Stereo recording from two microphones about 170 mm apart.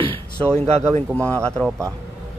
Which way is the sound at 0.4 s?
5° left (ahead or behind).